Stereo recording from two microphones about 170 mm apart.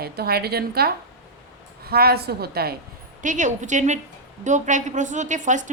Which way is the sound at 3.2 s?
45° right (ahead or behind).